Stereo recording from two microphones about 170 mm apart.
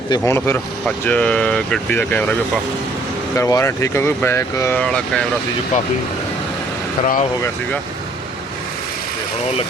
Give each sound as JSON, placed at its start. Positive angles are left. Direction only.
{"t": 0.1, "sound": "speech", "side_deg": 15}
{"t": 3.3, "sound": "speech", "side_deg": 15}
{"t": 7.0, "sound": "speech", "side_deg": 45}